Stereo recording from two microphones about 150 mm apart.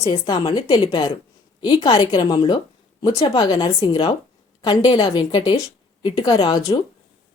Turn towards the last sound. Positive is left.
turn(degrees=25)  # may be behind; listen again after turning